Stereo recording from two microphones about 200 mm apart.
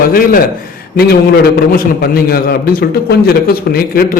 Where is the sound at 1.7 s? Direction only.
50° left (ahead or behind).